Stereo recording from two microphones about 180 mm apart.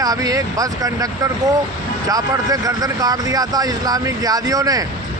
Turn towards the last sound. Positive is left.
turn(degrees=-20)  # may be behind; listen again after turning